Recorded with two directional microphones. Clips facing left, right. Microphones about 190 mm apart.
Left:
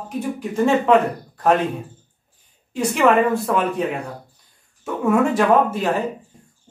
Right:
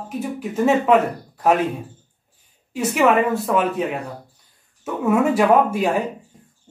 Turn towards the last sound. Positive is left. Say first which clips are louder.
# right 1 dB
turn(degrees=-10)  # may be behind; listen again after turning